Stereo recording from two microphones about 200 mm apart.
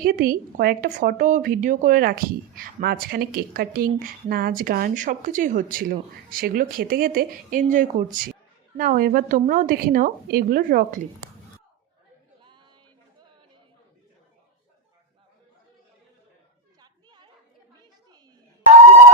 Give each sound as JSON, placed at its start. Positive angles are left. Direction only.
{"t": 0.0, "sound": "speech", "side_deg": -45}
{"t": 12.4, "sound": "a sound", "side_deg": -25}
{"t": 16.8, "sound": "children playing", "side_deg": -20}